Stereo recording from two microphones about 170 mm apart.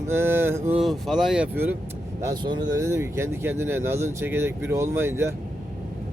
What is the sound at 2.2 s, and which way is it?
Speech, 20° right (ahead or behind).